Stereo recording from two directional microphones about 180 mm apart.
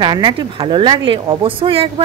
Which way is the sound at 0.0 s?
25° right (ahead or behind).